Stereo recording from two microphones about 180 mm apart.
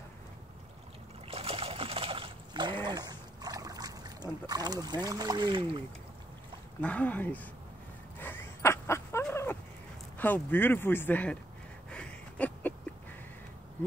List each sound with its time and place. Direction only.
1.3 s trickle: 35° right (ahead or behind)
2.8 s dog: 20° right (ahead or behind)
6.8 s speech: 5° left (ahead or behind)
8.2 s a sound: 10° left (ahead or behind)
9.3 s dog: 15° left (ahead or behind)
10.1 s speech: 10° left (ahead or behind)
11.9 s a sound: 5° left (ahead or behind)